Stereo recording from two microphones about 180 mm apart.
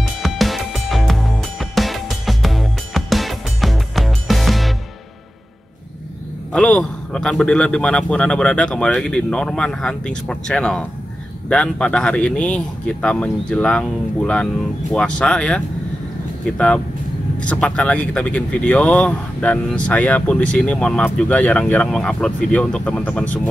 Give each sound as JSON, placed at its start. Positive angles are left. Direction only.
{"t": 0.0, "sound": "music", "side_deg": 0}
{"t": 6.5, "sound": "a man's voice", "side_deg": 5}